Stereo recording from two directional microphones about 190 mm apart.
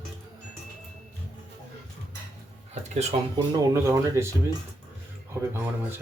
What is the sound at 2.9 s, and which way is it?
Speech, 35° right (ahead or behind).